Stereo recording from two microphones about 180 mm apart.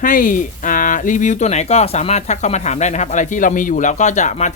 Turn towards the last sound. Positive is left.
turn(degrees=40)  # may be behind; listen again after turning